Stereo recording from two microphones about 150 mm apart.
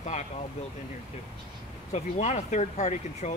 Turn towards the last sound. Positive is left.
turn(degrees=50)  # may be behind; listen again after turning